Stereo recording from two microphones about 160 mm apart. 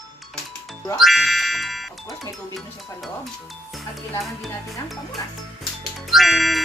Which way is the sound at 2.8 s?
Centre (ahead or behind).